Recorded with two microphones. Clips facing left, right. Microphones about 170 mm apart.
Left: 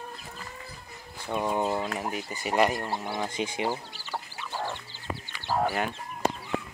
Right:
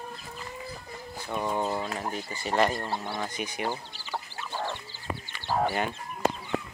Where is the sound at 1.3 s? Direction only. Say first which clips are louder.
Left 2 dB; 15° left (ahead or behind).